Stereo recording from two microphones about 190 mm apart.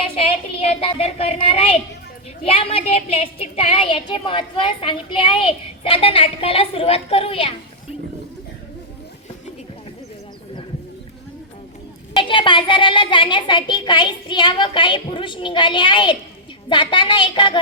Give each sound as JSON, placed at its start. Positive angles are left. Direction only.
{"t": 0.8, "sound": "speech", "side_deg": 30}
{"t": 12.1, "sound": "speech", "side_deg": 25}